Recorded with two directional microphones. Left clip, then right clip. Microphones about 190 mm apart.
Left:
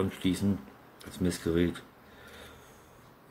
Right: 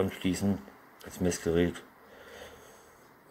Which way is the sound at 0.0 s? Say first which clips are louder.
Even; centre (ahead or behind).